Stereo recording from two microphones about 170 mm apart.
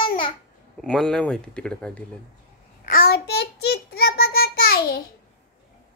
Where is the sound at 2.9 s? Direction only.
70° left (ahead or behind).